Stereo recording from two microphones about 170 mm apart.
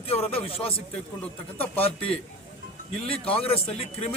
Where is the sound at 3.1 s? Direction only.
35° left (ahead or behind).